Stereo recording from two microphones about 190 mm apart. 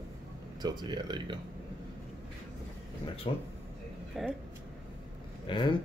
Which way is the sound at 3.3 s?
30° left (ahead or behind).